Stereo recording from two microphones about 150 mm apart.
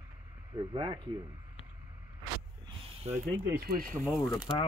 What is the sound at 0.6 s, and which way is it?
Speech, 35° right (ahead or behind).